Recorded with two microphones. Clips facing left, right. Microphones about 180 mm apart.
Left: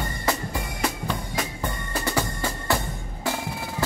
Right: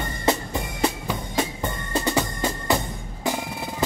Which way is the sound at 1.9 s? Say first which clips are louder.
Right 4 dB; 20° right (ahead or behind).